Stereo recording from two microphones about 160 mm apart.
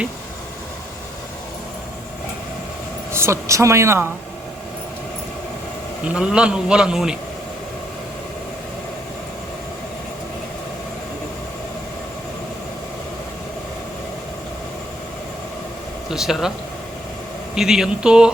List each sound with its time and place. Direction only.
3.1 s a woman's voice: 15° right (ahead or behind)
6.1 s a man's voice: 5° right (ahead or behind)
16.0 s speech: 5° right (ahead or behind)
17.5 s a man's voice: 5° right (ahead or behind)